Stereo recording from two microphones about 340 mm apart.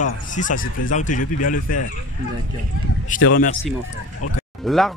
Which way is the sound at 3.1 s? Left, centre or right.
Left.